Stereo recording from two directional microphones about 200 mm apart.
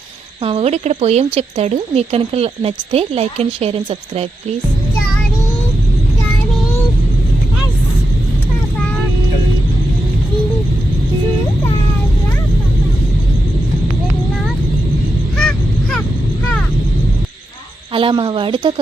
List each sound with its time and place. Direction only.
0.4 s a woman's voice: 30° right (ahead or behind)
15.4 s honk: 5° left (ahead or behind)
17.9 s speech: 25° right (ahead or behind)